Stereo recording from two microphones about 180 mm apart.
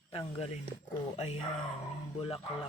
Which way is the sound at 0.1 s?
30° left (ahead or behind).